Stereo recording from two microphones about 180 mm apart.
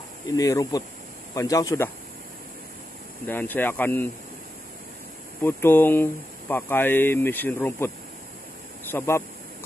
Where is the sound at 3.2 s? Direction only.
10° left (ahead or behind).